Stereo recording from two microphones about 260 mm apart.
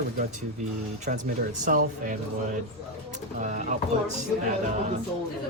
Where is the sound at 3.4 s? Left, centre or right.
Right.